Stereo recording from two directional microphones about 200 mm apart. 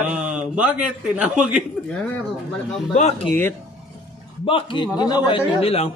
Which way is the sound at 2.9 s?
35° left (ahead or behind).